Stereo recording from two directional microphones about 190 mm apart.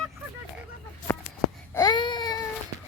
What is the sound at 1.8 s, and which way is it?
Baby cry, 20° left (ahead or behind).